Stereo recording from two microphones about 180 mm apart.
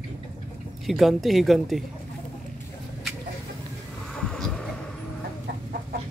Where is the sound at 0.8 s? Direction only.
Centre (ahead or behind).